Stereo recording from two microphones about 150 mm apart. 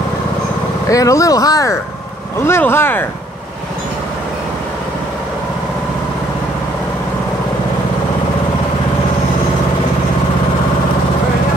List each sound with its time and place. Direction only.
0.8 s speech: 20° left (ahead or behind)